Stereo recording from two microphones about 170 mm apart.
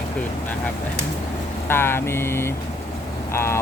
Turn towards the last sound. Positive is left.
turn(degrees=15)  # may be behind; listen again after turning